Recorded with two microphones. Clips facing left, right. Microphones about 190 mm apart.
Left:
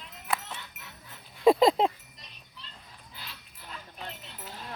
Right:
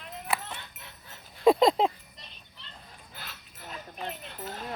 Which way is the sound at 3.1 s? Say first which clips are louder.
Right 1 dB; 50° right (ahead or behind).